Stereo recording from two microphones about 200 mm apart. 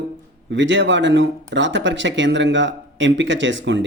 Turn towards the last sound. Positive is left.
turn(degrees=-65)  # may be behind; listen again after turning